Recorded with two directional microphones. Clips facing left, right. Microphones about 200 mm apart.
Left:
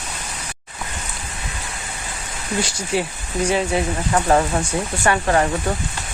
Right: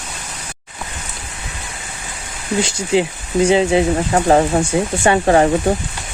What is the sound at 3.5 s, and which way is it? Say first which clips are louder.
Speech: right 6 dB; 25° right (ahead or behind).